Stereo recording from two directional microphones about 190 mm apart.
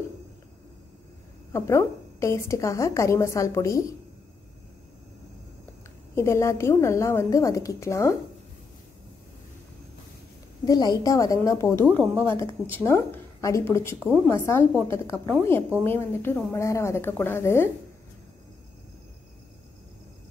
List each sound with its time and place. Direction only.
1.5 s a woman's voice: 15° left (ahead or behind)
6.1 s a woman's voice: 15° left (ahead or behind)
10.6 s a woman's voice: 20° left (ahead or behind)
13.9 s a woman's voice: centre (ahead or behind)
14.3 s a woman's voice: 15° left (ahead or behind)